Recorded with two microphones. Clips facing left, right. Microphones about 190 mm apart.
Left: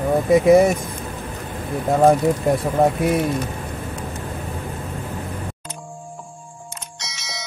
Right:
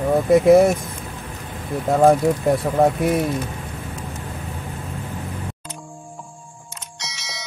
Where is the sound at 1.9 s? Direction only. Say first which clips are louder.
Even; centre (ahead or behind).